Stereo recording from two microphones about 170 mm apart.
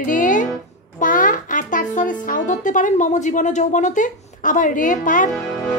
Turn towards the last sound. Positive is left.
turn(degrees=0)  # may be behind; listen again after turning